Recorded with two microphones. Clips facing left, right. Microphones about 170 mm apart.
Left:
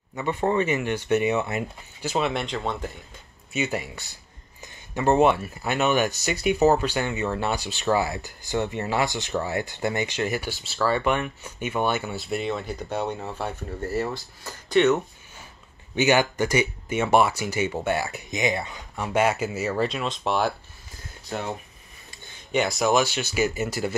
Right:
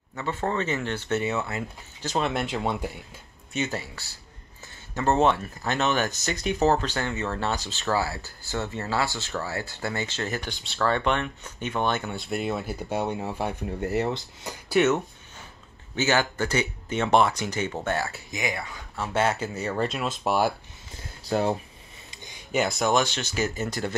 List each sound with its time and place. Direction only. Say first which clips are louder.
0.1 s speech: left 4 dB; 15° left (ahead or behind)
2.4 s speech: right 1 dB; 10° right (ahead or behind)
3.5 s speech: left 2 dB; 10° left (ahead or behind); by 14.6 s 20° right (ahead or behind)
14.7 s speech: left 2 dB; 5° right (ahead or behind)
16.0 s speech: left 4 dB; 15° left (ahead or behind); by 20.5 s 5° right (ahead or behind)
21.2 s speech: right 6 dB; 35° right (ahead or behind)
22.1 s a sound: right 2 dB; 15° right (ahead or behind)
22.5 s speech: left 2 dB; centre (ahead or behind)